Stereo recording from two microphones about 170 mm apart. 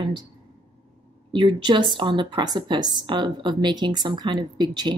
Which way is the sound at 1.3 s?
30° right (ahead or behind).